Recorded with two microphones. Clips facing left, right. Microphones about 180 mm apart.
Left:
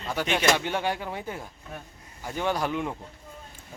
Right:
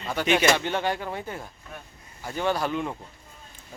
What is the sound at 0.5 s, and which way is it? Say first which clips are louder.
Speech: right 1 dB; 10° left (ahead or behind).